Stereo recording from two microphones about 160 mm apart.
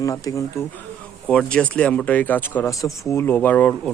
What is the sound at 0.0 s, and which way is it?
Speech, 20° left (ahead or behind).